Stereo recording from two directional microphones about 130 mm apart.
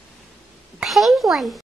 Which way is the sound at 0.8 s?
Centre (ahead or behind).